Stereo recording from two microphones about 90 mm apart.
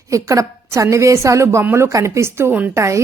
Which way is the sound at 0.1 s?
35° right (ahead or behind).